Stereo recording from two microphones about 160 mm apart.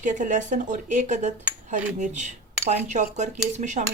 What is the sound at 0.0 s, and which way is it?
Speech, 50° right (ahead or behind).